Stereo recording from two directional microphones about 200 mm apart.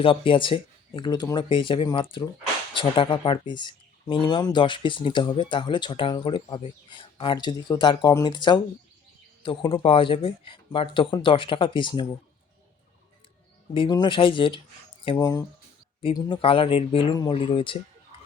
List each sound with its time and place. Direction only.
0.0 s speech: 25° left (ahead or behind)
13.7 s speech: 20° left (ahead or behind)